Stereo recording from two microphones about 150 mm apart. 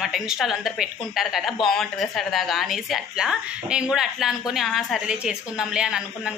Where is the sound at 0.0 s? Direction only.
Centre (ahead or behind).